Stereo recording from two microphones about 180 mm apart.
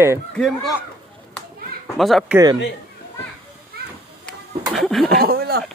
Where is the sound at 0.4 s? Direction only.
Centre (ahead or behind).